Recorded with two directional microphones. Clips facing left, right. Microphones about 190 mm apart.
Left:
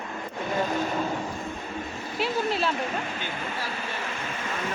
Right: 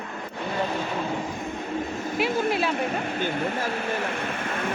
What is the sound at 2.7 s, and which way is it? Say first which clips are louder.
Speech: right 4 dB; 55° right (ahead or behind).